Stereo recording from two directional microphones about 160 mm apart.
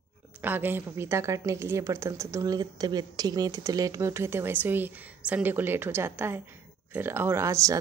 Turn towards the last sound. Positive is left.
turn(degrees=-20)  # may be behind; listen again after turning